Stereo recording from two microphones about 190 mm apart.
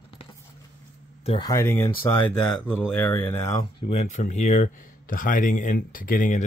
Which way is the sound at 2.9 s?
10° left (ahead or behind).